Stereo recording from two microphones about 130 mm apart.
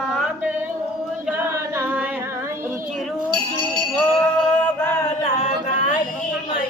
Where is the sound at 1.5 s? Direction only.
20° right (ahead or behind).